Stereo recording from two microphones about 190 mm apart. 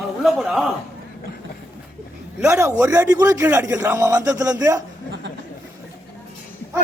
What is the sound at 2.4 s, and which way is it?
A man's voice, 15° right (ahead or behind).